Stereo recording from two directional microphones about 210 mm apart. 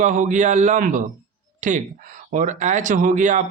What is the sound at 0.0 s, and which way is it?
Speech, 35° right (ahead or behind).